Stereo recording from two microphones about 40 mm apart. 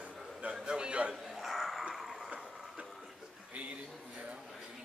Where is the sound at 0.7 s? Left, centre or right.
Right.